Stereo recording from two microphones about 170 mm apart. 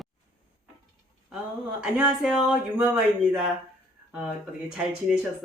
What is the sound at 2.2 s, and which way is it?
Speech, centre (ahead or behind).